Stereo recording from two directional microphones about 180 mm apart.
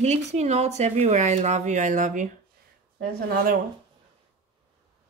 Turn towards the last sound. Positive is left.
turn(degrees=-55)  # may be behind; listen again after turning